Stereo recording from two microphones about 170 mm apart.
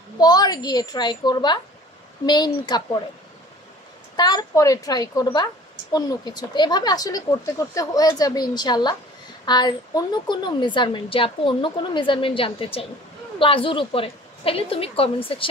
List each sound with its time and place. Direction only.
0.2 s a woman's voice: 20° left (ahead or behind)
4.2 s a woman's voice: 25° left (ahead or behind)